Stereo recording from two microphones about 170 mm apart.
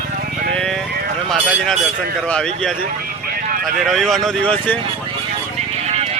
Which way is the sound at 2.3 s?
5° left (ahead or behind).